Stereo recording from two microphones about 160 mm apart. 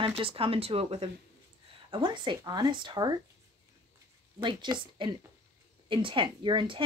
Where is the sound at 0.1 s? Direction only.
35° right (ahead or behind).